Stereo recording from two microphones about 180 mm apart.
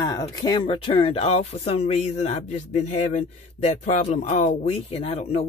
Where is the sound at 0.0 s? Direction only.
20° left (ahead or behind).